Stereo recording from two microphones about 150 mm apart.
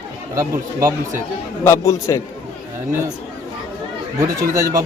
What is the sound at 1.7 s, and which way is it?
Speech, 20° left (ahead or behind).